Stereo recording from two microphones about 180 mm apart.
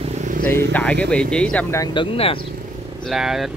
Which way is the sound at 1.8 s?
25° left (ahead or behind).